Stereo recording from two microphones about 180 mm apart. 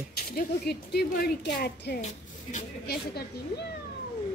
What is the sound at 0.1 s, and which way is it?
A woman's voice, 60° left (ahead or behind).